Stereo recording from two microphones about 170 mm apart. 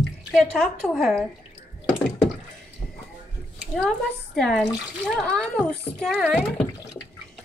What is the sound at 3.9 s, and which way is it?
A child's voice, centre (ahead or behind).